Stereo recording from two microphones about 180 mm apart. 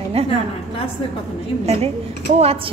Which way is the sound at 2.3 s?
35° right (ahead or behind).